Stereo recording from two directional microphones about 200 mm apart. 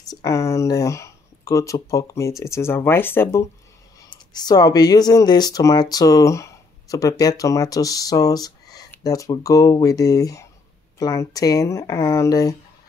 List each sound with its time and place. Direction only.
0.1 s speech: 15° left (ahead or behind)